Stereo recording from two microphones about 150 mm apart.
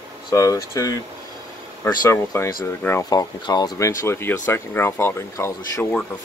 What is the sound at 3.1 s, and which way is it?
Speech, 25° left (ahead or behind).